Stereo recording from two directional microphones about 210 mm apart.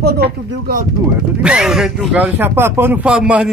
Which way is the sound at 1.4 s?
5° right (ahead or behind).